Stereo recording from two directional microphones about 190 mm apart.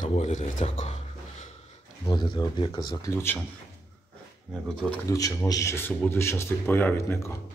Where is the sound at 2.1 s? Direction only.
25° left (ahead or behind).